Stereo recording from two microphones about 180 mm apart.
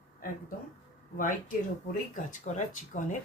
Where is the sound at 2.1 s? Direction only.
45° left (ahead or behind).